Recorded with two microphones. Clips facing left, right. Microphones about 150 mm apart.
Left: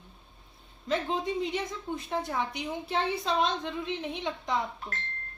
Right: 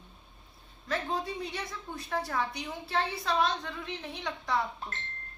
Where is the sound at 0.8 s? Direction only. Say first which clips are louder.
Left 3 dB; 20° left (ahead or behind).